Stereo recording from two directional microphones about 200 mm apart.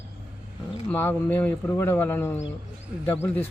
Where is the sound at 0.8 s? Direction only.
10° left (ahead or behind).